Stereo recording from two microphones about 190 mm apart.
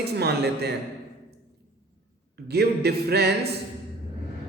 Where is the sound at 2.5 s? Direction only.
60° right (ahead or behind).